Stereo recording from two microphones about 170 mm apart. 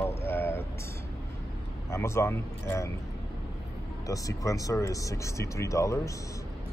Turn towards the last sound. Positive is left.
turn(degrees=20)  # may be behind; listen again after turning